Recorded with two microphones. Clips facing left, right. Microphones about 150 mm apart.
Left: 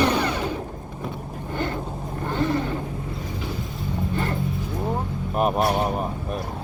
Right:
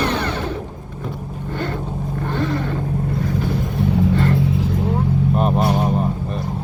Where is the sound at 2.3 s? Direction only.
20° left (ahead or behind).